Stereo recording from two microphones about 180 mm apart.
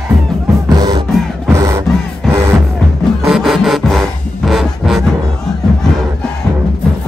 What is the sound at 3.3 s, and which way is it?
Music, centre (ahead or behind).